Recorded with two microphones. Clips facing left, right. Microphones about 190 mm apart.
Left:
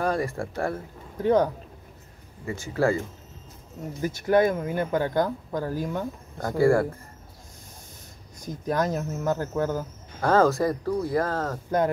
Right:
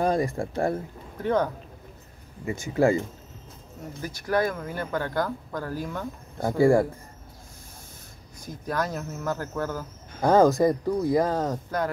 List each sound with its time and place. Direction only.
0.0 s speech: 20° right (ahead or behind)
1.2 s speech: 15° left (ahead or behind)
2.4 s speech: 20° right (ahead or behind)
4.0 s speech: 20° left (ahead or behind)
6.4 s speech: 15° right (ahead or behind)
8.5 s speech: 20° left (ahead or behind)
10.2 s speech: 15° right (ahead or behind)